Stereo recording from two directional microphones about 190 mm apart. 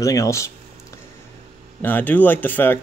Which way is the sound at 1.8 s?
10° left (ahead or behind).